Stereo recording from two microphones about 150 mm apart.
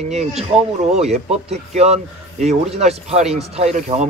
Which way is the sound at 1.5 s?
45° right (ahead or behind).